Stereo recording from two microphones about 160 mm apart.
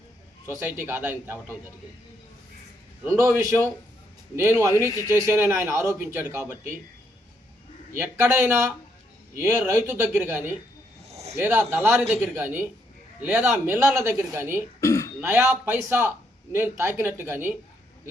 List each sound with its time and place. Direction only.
0.4 s speech: 15° right (ahead or behind)
3.0 s speech: 15° right (ahead or behind)
7.9 s speech: 15° right (ahead or behind)
11.1 s a sound: 40° right (ahead or behind)
11.3 s speech: 15° right (ahead or behind)
14.8 s throat clearing: 20° left (ahead or behind)
15.2 s speech: 15° right (ahead or behind)